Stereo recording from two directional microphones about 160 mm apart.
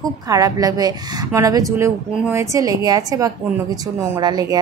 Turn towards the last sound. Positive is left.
turn(degrees=-25)  # may be behind; listen again after turning